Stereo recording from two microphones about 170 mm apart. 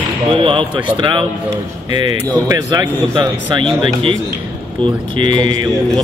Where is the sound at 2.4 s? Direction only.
20° right (ahead or behind).